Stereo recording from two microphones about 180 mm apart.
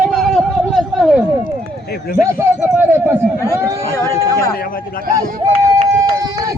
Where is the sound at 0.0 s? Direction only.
Centre (ahead or behind).